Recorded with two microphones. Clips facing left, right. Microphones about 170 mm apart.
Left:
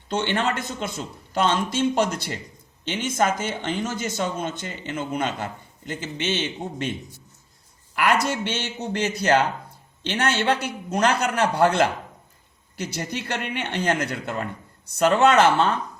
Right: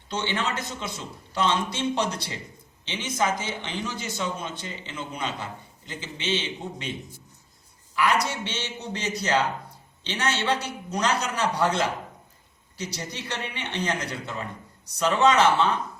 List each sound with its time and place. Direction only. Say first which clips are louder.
0.1 s speech: left 5 dB; 55° left (ahead or behind)
8.3 s a man's voice: left 5 dB; 50° left (ahead or behind)